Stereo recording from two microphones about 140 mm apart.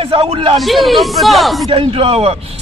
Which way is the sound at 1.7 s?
40° right (ahead or behind).